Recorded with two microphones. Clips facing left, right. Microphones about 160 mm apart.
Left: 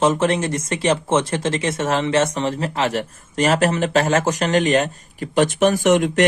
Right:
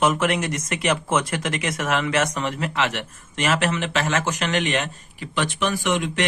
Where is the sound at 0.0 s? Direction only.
30° left (ahead or behind).